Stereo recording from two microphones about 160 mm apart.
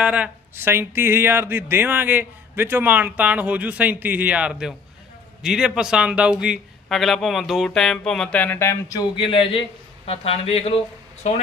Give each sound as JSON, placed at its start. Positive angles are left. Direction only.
{"t": 0.0, "sound": "a man's voice", "side_deg": -10}
{"t": 9.2, "sound": "a man's voice", "side_deg": 35}